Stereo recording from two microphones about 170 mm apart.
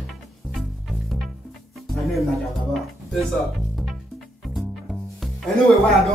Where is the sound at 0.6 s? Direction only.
Centre (ahead or behind).